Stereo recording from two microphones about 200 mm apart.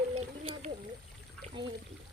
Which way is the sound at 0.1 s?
35° right (ahead or behind).